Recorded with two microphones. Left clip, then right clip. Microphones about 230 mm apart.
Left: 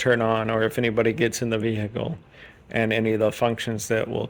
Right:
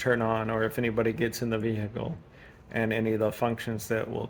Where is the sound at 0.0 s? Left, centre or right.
Left.